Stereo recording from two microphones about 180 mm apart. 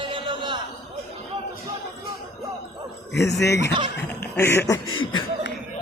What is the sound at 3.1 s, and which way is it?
Speech, 70° left (ahead or behind).